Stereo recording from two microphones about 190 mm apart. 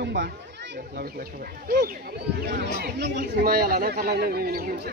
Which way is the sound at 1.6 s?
50° right (ahead or behind).